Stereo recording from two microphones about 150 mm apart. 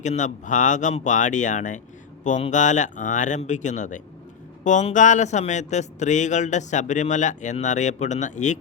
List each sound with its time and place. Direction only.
0.0 s speech: 50° left (ahead or behind)